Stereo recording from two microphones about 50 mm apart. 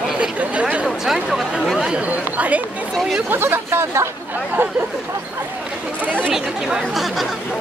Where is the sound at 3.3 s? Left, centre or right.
Right.